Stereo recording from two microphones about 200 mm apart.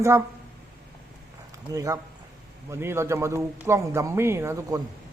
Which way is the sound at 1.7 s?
15° right (ahead or behind).